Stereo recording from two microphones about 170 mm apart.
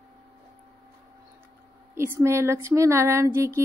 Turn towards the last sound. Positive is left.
turn(degrees=-15)  # may be behind; listen again after turning